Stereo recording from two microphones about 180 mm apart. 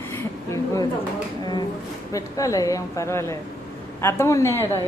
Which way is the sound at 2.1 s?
20° left (ahead or behind).